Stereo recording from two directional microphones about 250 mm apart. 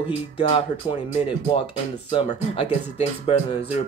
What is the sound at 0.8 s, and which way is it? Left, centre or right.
Speech, centre.